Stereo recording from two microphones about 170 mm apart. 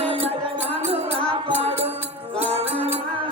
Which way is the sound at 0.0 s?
30° right (ahead or behind).